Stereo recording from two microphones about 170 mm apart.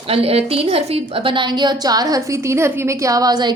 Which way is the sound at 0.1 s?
35° right (ahead or behind).